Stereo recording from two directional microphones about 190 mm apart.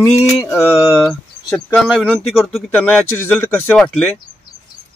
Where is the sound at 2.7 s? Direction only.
10° left (ahead or behind).